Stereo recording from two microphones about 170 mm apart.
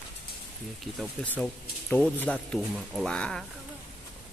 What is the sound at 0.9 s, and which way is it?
A man's voice, 5° left (ahead or behind).